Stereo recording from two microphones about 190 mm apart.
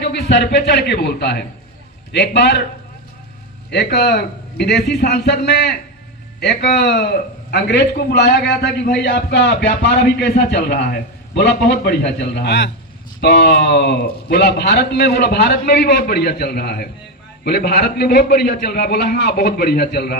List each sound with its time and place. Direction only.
0.0 s a man's voice: 65° left (ahead or behind)
3.7 s a man's voice: 60° left (ahead or behind)